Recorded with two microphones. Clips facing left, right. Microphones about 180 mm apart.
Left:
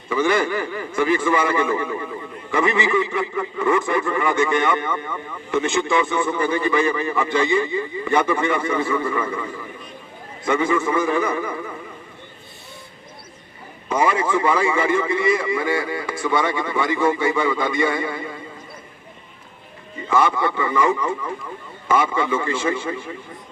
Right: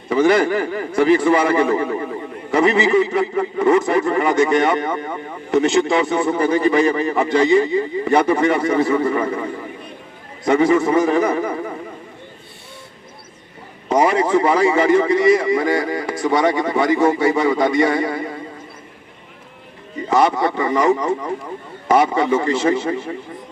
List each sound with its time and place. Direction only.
0.1 s a man's voice: 40° right (ahead or behind)
13.8 s a man's voice: 40° right (ahead or behind)
20.1 s a man's voice: 40° right (ahead or behind)